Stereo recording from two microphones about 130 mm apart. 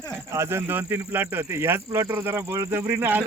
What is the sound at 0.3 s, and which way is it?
Speech, 20° right (ahead or behind).